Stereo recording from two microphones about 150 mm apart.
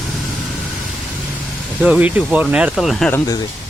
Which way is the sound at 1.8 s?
10° right (ahead or behind).